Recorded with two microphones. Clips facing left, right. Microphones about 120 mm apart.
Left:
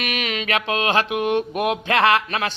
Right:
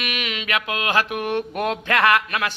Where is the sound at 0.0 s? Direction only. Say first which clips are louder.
Left 3 dB; 40° left (ahead or behind).